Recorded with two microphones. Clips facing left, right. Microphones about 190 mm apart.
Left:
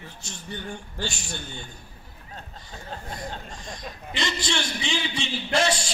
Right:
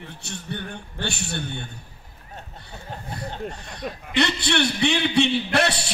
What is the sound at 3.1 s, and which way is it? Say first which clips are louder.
A man's voice: right 4 dB; 65° right (ahead or behind).